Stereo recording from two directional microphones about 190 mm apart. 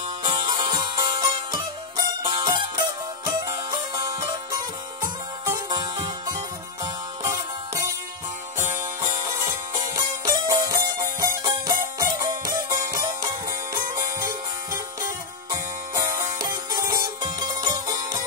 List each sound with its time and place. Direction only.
0.5 s music: 25° right (ahead or behind)
5.7 s music: 20° right (ahead or behind)
9.9 s music: 20° right (ahead or behind)
15.5 s music: 20° right (ahead or behind)